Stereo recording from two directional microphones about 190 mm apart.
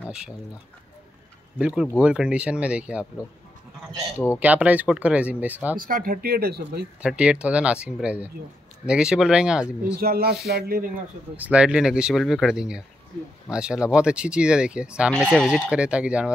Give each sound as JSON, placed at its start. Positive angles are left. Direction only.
{"t": 1.6, "sound": "speech", "side_deg": -5}
{"t": 4.4, "sound": "speech", "side_deg": -10}
{"t": 5.8, "sound": "speech", "side_deg": -50}
{"t": 7.0, "sound": "speech", "side_deg": -5}
{"t": 9.9, "sound": "speech", "side_deg": -55}
{"t": 11.3, "sound": "speech", "side_deg": -5}